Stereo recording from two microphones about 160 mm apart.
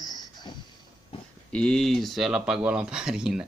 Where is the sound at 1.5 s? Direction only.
5° left (ahead or behind).